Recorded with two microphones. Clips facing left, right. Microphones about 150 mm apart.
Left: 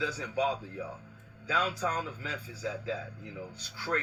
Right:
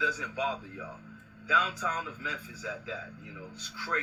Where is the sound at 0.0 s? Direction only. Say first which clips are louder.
Left 2 dB; 40° left (ahead or behind).